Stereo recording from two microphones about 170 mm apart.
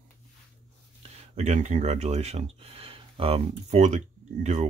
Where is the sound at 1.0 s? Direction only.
40° right (ahead or behind).